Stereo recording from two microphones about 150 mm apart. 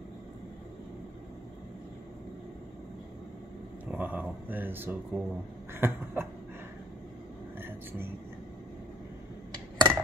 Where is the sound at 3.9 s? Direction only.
10° right (ahead or behind).